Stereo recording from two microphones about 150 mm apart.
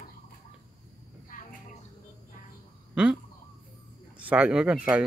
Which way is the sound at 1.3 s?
65° left (ahead or behind).